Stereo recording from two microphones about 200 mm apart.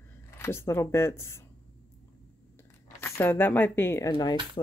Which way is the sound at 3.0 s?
10° left (ahead or behind).